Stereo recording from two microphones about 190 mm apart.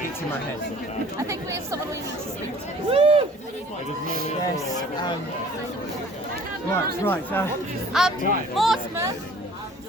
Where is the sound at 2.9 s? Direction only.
30° right (ahead or behind).